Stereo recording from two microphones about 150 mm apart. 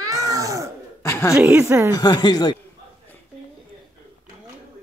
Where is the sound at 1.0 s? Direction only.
20° left (ahead or behind).